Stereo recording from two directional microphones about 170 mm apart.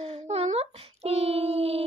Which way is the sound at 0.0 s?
35° right (ahead or behind).